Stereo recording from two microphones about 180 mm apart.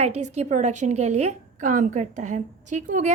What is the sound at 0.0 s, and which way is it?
A woman's voice, 35° right (ahead or behind).